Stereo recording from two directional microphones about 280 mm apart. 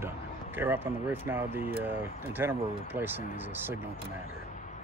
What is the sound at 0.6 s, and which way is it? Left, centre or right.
Speech, centre.